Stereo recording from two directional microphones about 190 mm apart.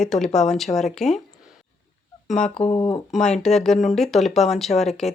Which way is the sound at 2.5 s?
25° left (ahead or behind).